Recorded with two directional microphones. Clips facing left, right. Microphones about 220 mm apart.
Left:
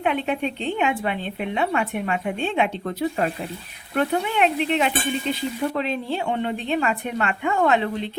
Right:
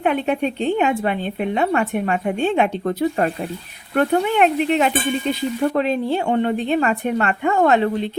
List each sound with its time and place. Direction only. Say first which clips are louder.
0.0 s speech: right 4 dB; 45° right (ahead or behind)